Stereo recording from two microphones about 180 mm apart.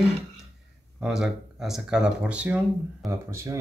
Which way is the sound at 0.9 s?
5° right (ahead or behind).